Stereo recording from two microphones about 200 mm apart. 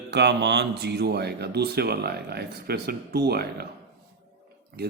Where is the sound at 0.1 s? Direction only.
60° right (ahead or behind).